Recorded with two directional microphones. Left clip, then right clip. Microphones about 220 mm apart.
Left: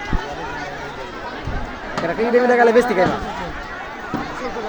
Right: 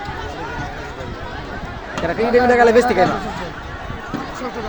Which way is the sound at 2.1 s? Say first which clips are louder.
Right 1 dB; 10° right (ahead or behind).